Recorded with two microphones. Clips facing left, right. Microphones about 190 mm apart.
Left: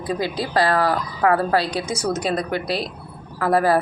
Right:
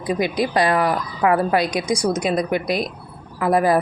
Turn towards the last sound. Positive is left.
turn(degrees=-15)  # may be behind; listen again after turning